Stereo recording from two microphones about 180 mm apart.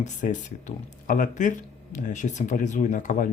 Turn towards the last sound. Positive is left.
turn(degrees=45)  # may be behind; listen again after turning